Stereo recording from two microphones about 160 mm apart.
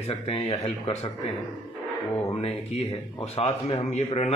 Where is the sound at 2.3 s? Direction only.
40° left (ahead or behind).